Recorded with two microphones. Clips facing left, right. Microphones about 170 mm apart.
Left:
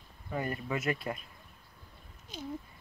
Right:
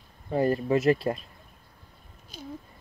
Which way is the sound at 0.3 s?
35° right (ahead or behind).